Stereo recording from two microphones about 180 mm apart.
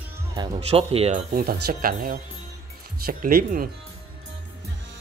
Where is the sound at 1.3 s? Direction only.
55° right (ahead or behind).